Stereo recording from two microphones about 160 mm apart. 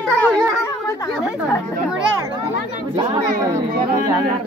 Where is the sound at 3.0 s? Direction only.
25° right (ahead or behind).